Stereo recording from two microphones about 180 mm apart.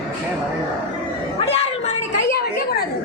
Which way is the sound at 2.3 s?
60° left (ahead or behind).